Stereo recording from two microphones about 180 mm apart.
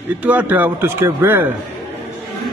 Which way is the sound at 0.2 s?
10° right (ahead or behind).